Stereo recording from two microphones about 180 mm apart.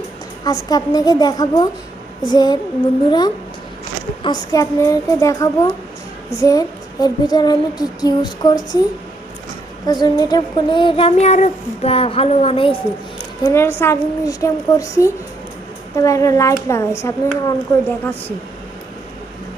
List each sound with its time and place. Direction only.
0.4 s female singing: 20° left (ahead or behind)
4.2 s a woman's voice: 25° left (ahead or behind)
6.3 s female singing: 20° left (ahead or behind)
9.8 s child singing: 20° left (ahead or behind)
13.4 s a woman's voice: 15° left (ahead or behind)